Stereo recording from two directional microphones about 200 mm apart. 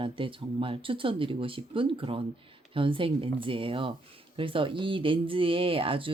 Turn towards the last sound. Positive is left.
turn(degrees=-25)  # may be behind; listen again after turning